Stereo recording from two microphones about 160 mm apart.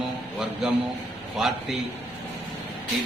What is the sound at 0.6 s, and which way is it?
A man's voice, 5° right (ahead or behind).